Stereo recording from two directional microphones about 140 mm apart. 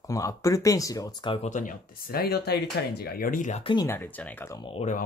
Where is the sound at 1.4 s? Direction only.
60° left (ahead or behind).